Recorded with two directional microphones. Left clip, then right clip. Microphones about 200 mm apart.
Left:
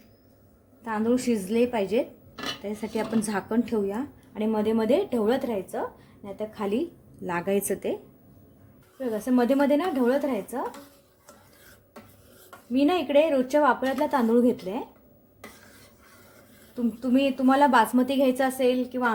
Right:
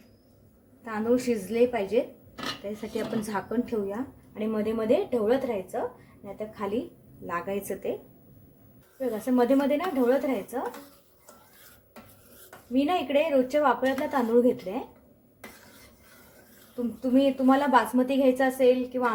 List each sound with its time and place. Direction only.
0.9 s a woman's voice: 40° left (ahead or behind)
7.3 s speech: 65° left (ahead or behind)
9.0 s a woman's voice: 45° left (ahead or behind)
12.7 s a woman's voice: 45° left (ahead or behind)
17.0 s a woman's voice: 40° left (ahead or behind)